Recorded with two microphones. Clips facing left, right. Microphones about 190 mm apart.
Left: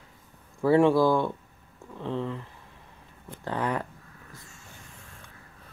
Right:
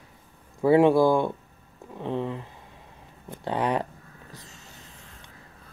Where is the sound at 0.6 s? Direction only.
20° right (ahead or behind).